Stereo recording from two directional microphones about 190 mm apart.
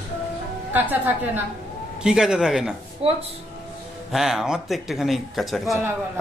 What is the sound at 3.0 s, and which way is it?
Speech, 30° right (ahead or behind).